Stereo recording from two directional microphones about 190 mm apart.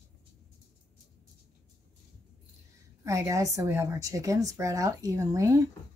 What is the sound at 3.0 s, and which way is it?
Speech, 15° right (ahead or behind).